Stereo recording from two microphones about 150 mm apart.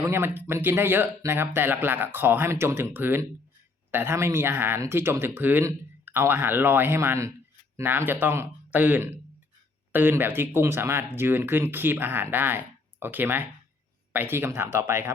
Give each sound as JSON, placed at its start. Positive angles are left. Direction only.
{"t": 0.0, "sound": "speech", "side_deg": -15}